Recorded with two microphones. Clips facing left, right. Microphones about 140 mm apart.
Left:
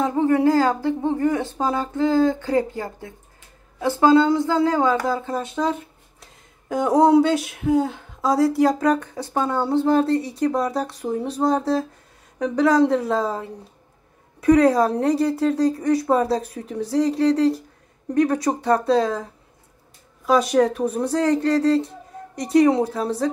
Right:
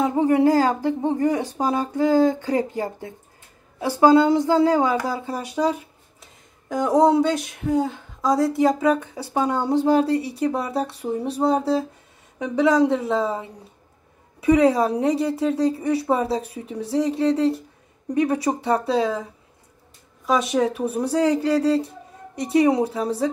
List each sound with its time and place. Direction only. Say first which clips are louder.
0.0 s speech: even; 15° right (ahead or behind)
6.2 s speech: left 2 dB; centre (ahead or behind)
20.2 s speech: left 3 dB; centre (ahead or behind)